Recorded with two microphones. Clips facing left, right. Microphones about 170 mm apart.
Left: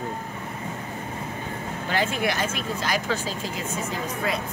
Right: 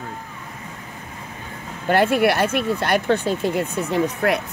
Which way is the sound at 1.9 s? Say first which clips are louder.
Right 9 dB; 60° right (ahead or behind).